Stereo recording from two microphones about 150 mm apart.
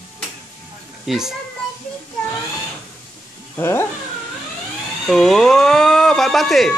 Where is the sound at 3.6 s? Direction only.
15° left (ahead or behind).